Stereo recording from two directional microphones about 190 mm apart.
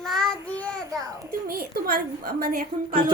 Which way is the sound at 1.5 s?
50° right (ahead or behind).